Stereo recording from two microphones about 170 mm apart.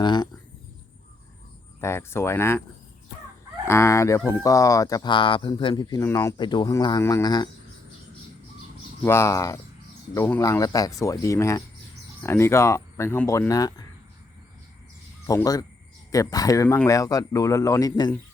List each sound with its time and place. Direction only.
0.0 s speech: 25° left (ahead or behind)
1.8 s speech: 15° left (ahead or behind)
3.7 s speech: 15° left (ahead or behind)
9.0 s speech: 15° left (ahead or behind)
15.3 s speech: 20° left (ahead or behind)